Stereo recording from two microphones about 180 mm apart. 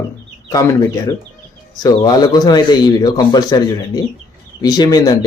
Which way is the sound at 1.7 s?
20° left (ahead or behind).